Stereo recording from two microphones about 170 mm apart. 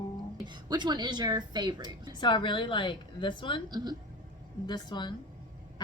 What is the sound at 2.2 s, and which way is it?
Speech, 30° left (ahead or behind).